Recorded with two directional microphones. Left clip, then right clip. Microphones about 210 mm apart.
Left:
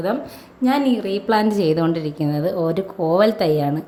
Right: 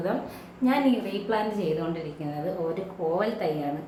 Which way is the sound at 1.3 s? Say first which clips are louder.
Left 9 dB; 55° left (ahead or behind).